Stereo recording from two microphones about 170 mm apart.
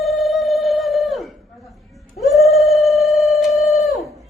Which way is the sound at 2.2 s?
Centre (ahead or behind).